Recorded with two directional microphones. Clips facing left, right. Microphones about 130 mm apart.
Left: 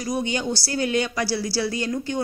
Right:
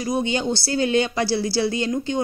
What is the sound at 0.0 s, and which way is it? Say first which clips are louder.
Speech: right 3 dB; 25° right (ahead or behind).